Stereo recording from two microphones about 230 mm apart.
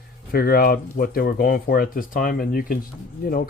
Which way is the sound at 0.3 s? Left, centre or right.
Left.